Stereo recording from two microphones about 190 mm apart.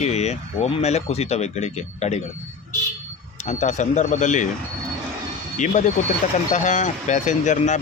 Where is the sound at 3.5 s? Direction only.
40° left (ahead or behind).